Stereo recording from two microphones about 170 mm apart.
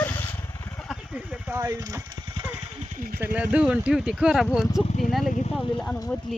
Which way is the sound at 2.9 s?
55° right (ahead or behind).